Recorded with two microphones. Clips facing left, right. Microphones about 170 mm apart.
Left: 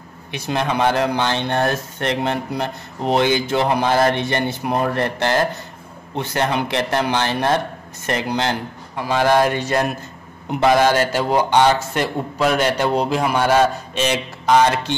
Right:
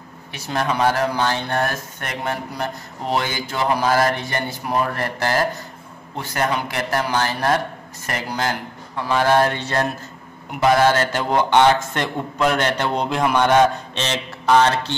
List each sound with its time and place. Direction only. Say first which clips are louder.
0.3 s speech: left 2 dB; 20° left (ahead or behind)
8.9 s a man's voice: left 1 dB; 15° left (ahead or behind)